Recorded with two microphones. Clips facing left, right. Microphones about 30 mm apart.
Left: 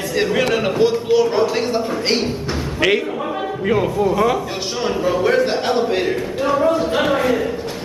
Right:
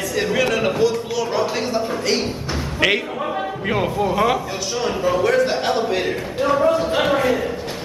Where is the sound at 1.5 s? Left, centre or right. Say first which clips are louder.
Left 2 dB; centre.